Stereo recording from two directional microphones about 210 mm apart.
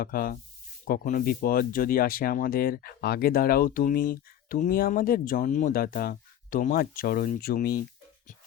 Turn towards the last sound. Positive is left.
turn(degrees=45)  # may be behind; listen again after turning